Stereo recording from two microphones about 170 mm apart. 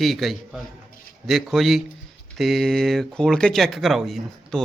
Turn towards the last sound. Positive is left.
turn(degrees=0)  # may be behind; listen again after turning